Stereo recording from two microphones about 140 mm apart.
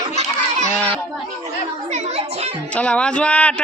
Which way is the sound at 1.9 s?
50° right (ahead or behind).